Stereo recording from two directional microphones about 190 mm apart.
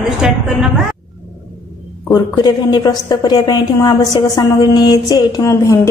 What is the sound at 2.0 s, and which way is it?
A woman's voice, 20° left (ahead or behind).